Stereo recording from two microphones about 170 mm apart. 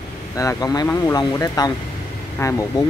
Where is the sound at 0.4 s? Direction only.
20° left (ahead or behind).